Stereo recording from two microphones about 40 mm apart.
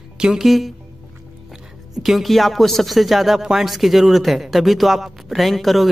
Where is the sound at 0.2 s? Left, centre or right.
Centre.